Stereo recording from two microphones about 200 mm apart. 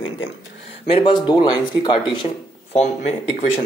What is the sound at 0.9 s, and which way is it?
Speech, 25° left (ahead or behind).